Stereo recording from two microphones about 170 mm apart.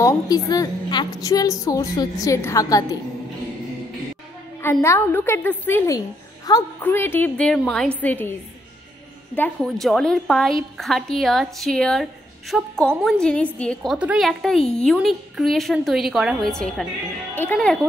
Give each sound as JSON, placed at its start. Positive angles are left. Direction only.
{"t": 0.0, "sound": "a woman's voice", "side_deg": 20}
{"t": 4.8, "sound": "a woman's voice", "side_deg": 15}
{"t": 9.6, "sound": "a woman's voice", "side_deg": 0}
{"t": 13.9, "sound": "a woman's voice", "side_deg": -5}